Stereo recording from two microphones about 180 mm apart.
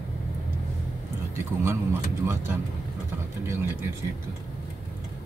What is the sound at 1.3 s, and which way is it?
Speech, 15° right (ahead or behind).